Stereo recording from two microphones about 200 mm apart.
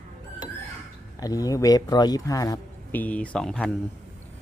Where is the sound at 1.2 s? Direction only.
20° left (ahead or behind).